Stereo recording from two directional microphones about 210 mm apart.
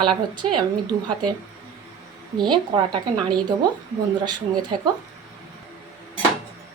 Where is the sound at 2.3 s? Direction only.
20° right (ahead or behind).